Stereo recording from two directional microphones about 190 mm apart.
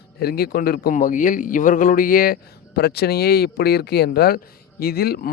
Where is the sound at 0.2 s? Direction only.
55° left (ahead or behind).